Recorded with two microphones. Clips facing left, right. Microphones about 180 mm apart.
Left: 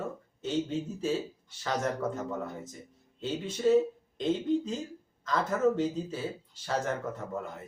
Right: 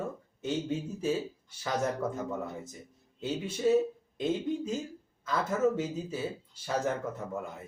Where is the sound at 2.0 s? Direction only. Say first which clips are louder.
Left 1 dB; 10° right (ahead or behind).